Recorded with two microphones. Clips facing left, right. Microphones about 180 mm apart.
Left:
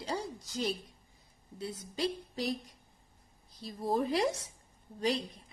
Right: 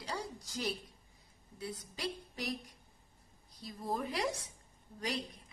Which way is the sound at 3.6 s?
30° left (ahead or behind).